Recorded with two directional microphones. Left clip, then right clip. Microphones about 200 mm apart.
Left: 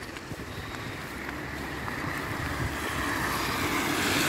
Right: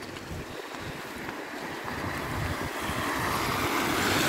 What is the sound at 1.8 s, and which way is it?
Boat, 10° right (ahead or behind).